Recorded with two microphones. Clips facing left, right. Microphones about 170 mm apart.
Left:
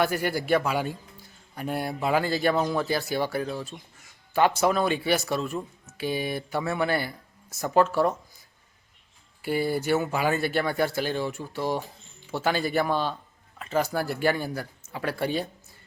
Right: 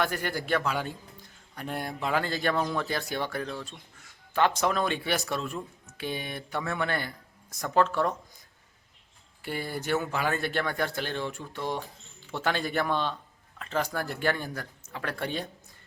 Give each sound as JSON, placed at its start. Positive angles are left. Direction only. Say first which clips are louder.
{"t": 0.0, "sound": "a man's voice", "louder": "left 4 dB", "side_deg": 10}
{"t": 9.4, "sound": "a man's voice", "louder": "left 8 dB", "side_deg": 10}